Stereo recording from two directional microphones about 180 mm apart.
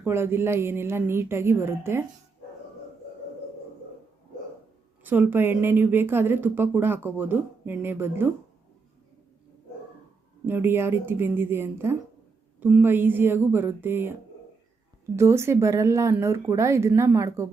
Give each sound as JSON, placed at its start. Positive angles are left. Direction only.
{"t": 0.0, "sound": "speech", "side_deg": -15}
{"t": 5.0, "sound": "speech", "side_deg": -10}
{"t": 10.4, "sound": "speech", "side_deg": -10}